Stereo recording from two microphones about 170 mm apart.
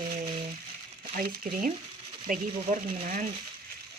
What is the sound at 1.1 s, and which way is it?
Speech, 60° right (ahead or behind).